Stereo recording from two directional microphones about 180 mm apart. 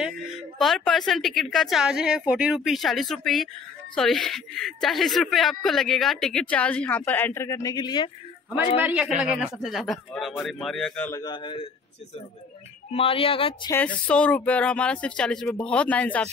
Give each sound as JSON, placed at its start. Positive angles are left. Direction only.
{"t": 0.6, "sound": "speech", "side_deg": 0}
{"t": 8.8, "sound": "speech", "side_deg": -5}
{"t": 11.1, "sound": "speech", "side_deg": 20}
{"t": 12.9, "sound": "speech", "side_deg": 30}
{"t": 13.7, "sound": "speech", "side_deg": 10}